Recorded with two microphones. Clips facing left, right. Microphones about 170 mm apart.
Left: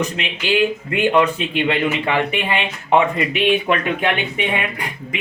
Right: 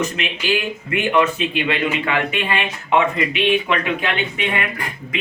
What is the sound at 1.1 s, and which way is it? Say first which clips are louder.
Speech: right 2 dB; 30° left (ahead or behind).